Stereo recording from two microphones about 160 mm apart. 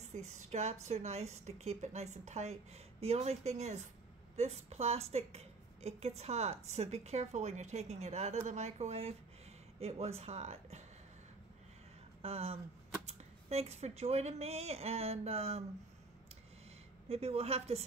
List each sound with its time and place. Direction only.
0.0 s a woman's voice: 45° right (ahead or behind)
12.2 s speech: 40° right (ahead or behind)
17.1 s speech: 40° right (ahead or behind)